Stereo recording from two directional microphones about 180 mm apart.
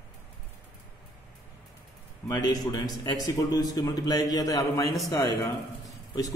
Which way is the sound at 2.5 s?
20° left (ahead or behind).